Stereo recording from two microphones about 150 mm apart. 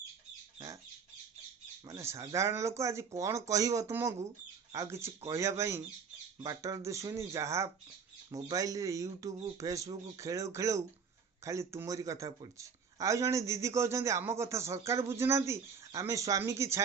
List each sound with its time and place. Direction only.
1.9 s speech: 20° right (ahead or behind)